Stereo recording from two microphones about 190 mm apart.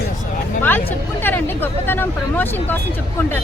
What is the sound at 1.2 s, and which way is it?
Speech, 10° left (ahead or behind).